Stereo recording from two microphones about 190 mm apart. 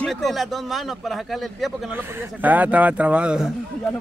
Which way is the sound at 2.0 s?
10° right (ahead or behind).